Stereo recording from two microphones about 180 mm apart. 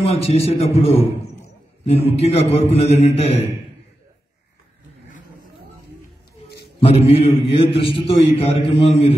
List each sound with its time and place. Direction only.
0.0 s a man's voice: 35° left (ahead or behind)
2.1 s a man's voice: 35° left (ahead or behind)
6.8 s a man's voice: 35° left (ahead or behind)